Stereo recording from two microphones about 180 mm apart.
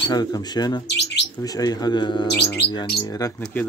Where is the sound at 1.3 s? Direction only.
20° left (ahead or behind).